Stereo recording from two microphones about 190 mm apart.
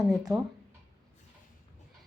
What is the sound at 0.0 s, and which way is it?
Speech, 5° right (ahead or behind).